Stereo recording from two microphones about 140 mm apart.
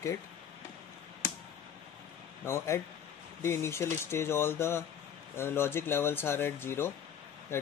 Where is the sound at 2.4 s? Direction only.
20° left (ahead or behind).